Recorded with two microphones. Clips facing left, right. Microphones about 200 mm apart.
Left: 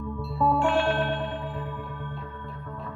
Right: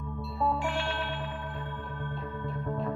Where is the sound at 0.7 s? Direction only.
50° left (ahead or behind).